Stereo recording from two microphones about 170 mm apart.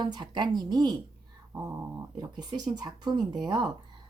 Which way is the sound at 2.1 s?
25° right (ahead or behind).